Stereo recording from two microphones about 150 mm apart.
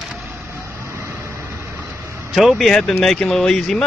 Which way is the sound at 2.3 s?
Centre (ahead or behind).